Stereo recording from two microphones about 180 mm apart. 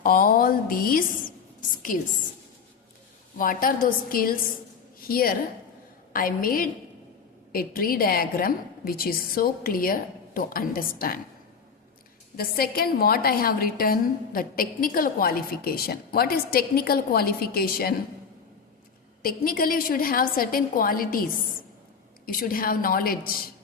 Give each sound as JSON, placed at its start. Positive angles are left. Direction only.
{"t": 0.0, "sound": "speech", "side_deg": 50}
{"t": 3.3, "sound": "a woman's voice", "side_deg": 50}
{"t": 12.4, "sound": "a woman's voice", "side_deg": 55}
{"t": 19.2, "sound": "a woman's voice", "side_deg": 55}
{"t": 22.3, "sound": "a woman's voice", "side_deg": 50}